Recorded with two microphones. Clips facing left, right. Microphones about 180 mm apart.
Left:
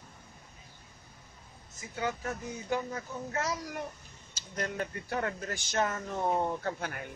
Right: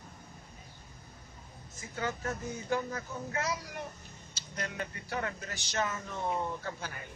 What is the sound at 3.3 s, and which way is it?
A child's voice, 40° left (ahead or behind).